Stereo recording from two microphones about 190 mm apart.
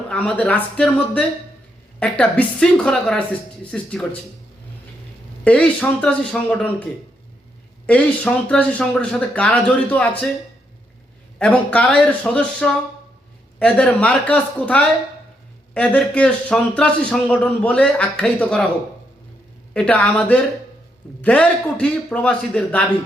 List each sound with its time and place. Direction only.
0.1 s a man's voice: 5° left (ahead or behind)
5.5 s a man's voice: 5° left (ahead or behind)
7.9 s a man's voice: 5° left (ahead or behind)
11.3 s a man's voice: 5° left (ahead or behind)
19.7 s a man's voice: 5° left (ahead or behind)